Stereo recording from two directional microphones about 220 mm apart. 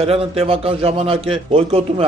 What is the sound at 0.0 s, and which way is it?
A man's voice, 25° right (ahead or behind).